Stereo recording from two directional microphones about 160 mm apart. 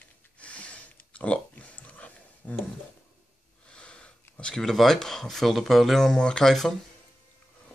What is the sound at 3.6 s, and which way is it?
Speech, 5° left (ahead or behind).